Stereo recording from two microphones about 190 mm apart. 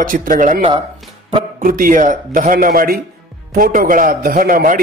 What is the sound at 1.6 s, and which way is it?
Speech, 45° right (ahead or behind).